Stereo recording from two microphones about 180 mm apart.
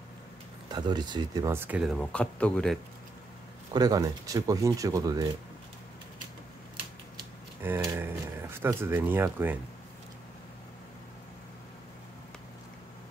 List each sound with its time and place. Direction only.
0.7 s speech: 25° right (ahead or behind); by 2.0 s 5° right (ahead or behind)
2.0 s speech: 5° left (ahead or behind)
3.7 s speech: 20° right (ahead or behind)
7.6 s speech: 15° right (ahead or behind)